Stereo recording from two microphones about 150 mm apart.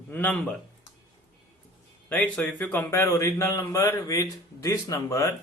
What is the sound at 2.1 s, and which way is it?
Speech, 10° left (ahead or behind).